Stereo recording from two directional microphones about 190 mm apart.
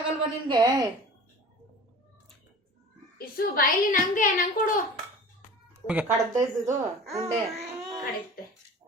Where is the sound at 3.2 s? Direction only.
50° left (ahead or behind).